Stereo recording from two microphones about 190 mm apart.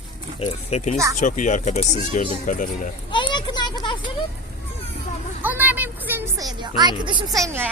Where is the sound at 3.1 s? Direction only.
25° left (ahead or behind).